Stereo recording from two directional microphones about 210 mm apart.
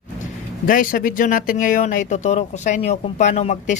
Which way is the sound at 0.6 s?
40° left (ahead or behind).